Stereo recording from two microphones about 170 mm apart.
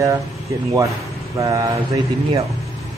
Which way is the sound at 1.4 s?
20° right (ahead or behind).